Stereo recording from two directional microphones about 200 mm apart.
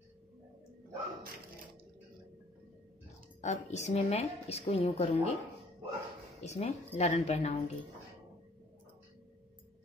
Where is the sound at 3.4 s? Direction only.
35° left (ahead or behind).